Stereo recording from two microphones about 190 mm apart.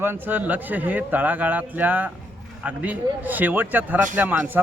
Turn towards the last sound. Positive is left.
turn(degrees=-10)  # may be behind; listen again after turning